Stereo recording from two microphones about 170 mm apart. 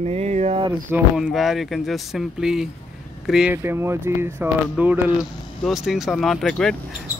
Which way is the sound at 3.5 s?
15° right (ahead or behind).